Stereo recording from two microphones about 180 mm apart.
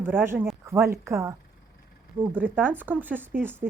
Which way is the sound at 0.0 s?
10° right (ahead or behind).